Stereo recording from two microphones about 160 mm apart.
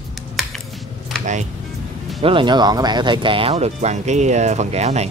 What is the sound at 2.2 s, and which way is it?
Speech, 35° right (ahead or behind).